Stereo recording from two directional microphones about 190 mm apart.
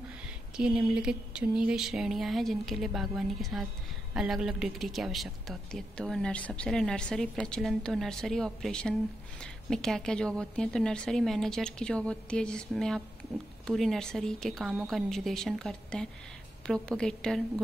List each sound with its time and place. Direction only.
0.6 s a woman's voice: 5° right (ahead or behind)